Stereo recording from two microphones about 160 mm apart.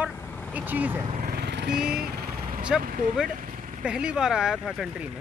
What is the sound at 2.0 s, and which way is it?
Vehicle, 70° right (ahead or behind).